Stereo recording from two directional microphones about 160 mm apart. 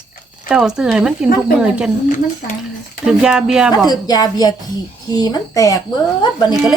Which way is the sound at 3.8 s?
25° left (ahead or behind).